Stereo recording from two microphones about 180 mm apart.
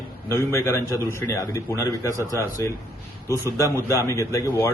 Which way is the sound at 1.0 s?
15° left (ahead or behind).